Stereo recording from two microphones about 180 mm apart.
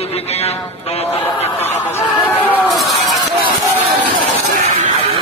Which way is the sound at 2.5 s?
5° right (ahead or behind).